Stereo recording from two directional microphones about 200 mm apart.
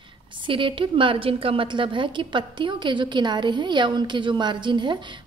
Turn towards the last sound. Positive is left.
turn(degrees=-25)  # may be behind; listen again after turning